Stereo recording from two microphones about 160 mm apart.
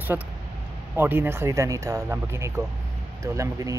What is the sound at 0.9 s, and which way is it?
Speech, 10° right (ahead or behind).